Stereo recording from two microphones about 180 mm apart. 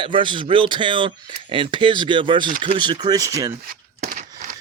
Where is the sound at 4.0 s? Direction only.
45° right (ahead or behind).